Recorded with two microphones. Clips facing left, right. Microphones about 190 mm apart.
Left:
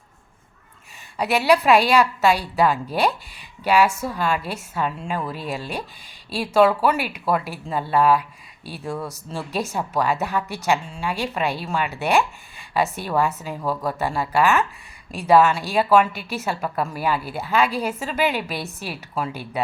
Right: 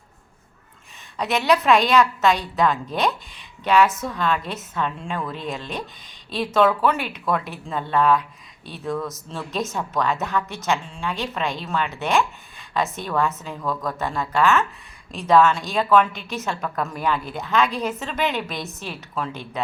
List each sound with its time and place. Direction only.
1.1 s a woman's voice: 10° left (ahead or behind)
9.0 s speech: 35° left (ahead or behind)
9.3 s a woman's voice: 10° left (ahead or behind)